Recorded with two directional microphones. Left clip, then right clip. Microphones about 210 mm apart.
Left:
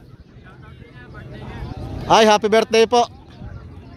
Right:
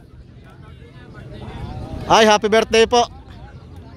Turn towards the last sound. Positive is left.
turn(degrees=0)  # may be behind; listen again after turning